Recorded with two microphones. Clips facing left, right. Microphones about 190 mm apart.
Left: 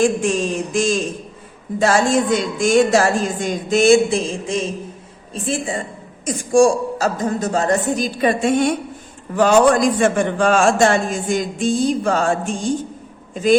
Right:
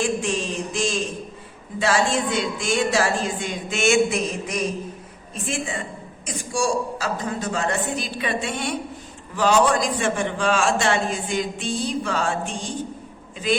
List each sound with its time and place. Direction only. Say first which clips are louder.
0.7 s a man's voice: left 5 dB; 50° left (ahead or behind)